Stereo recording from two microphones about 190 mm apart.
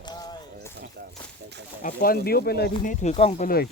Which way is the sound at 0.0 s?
20° left (ahead or behind).